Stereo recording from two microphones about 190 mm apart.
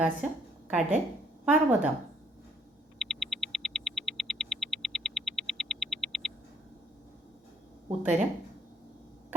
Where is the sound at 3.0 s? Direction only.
Centre (ahead or behind).